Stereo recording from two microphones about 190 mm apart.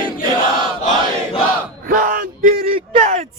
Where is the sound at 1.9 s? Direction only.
45° right (ahead or behind).